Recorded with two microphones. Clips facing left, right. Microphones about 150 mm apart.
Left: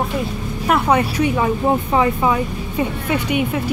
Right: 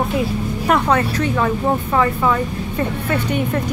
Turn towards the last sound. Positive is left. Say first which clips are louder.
# even
turn(degrees=10)  # may be behind; listen again after turning